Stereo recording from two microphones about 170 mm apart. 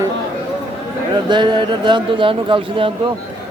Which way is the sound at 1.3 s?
25° right (ahead or behind).